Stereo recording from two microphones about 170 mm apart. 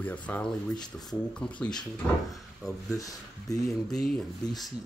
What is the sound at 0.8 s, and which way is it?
Speech, 25° left (ahead or behind).